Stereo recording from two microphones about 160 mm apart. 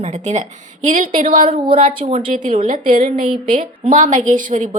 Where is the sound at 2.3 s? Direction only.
55° right (ahead or behind).